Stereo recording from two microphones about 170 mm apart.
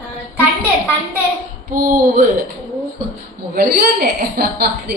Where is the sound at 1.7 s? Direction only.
55° right (ahead or behind).